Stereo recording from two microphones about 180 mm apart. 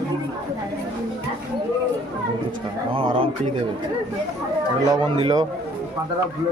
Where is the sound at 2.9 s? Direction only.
30° right (ahead or behind).